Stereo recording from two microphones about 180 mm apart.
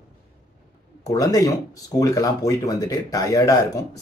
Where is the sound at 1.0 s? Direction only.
20° left (ahead or behind).